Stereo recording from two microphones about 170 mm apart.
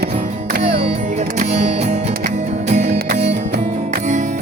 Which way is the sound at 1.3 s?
40° right (ahead or behind).